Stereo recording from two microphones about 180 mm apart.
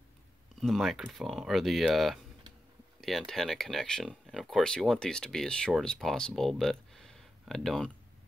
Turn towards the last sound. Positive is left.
turn(degrees=0)  # may be behind; listen again after turning